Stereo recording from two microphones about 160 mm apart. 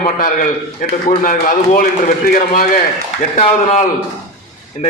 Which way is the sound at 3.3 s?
45° left (ahead or behind).